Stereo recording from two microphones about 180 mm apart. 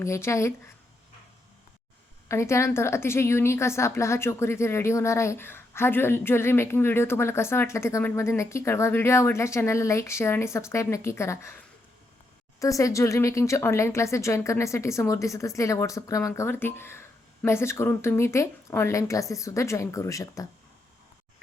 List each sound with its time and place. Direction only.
0.0 s a woman's voice: 15° left (ahead or behind)
2.2 s a woman's voice: 15° left (ahead or behind)